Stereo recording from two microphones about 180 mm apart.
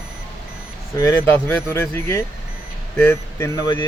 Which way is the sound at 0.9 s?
15° left (ahead or behind).